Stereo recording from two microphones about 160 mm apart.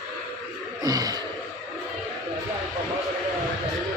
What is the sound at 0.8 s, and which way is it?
Gasp, 25° right (ahead or behind).